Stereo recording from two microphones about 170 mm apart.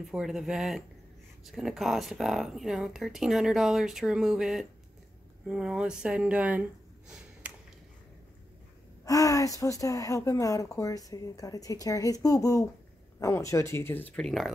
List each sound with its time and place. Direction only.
0.0 s speech: centre (ahead or behind)
9.0 s a woman's voice: 20° left (ahead or behind); by 14.5 s centre (ahead or behind)